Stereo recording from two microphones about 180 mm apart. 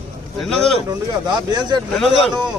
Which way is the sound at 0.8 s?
25° right (ahead or behind).